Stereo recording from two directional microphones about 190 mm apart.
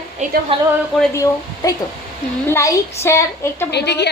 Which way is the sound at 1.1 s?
15° left (ahead or behind).